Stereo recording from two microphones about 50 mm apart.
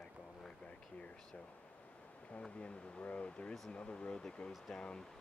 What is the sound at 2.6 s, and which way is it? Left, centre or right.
Speech, left.